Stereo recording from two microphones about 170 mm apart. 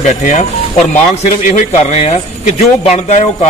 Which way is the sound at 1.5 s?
40° left (ahead or behind).